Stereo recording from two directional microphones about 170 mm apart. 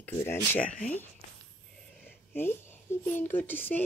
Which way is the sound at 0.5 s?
5° left (ahead or behind).